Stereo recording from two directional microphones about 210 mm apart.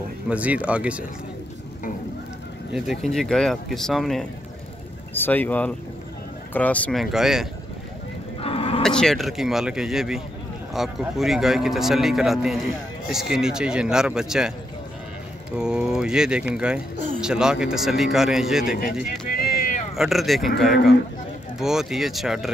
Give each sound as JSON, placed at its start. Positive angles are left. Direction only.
{"t": 0.3, "sound": "speech", "side_deg": -5}
{"t": 2.7, "sound": "speech", "side_deg": 0}
{"t": 8.4, "sound": "a sound", "side_deg": 25}
{"t": 8.8, "sound": "speech", "side_deg": 0}
{"t": 15.5, "sound": "speech", "side_deg": -5}
{"t": 20.0, "sound": "speech", "side_deg": 0}